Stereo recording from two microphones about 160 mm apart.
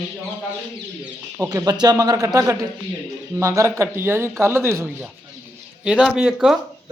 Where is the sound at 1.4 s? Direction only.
25° right (ahead or behind).